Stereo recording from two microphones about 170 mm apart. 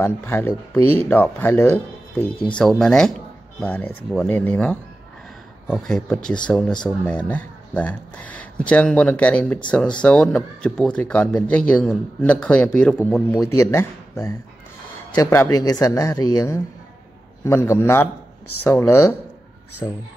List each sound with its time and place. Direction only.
0.0 s speech: 15° left (ahead or behind)
13.6 s speech: 15° left (ahead or behind)